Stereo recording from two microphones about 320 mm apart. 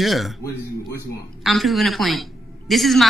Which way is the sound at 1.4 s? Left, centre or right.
Centre.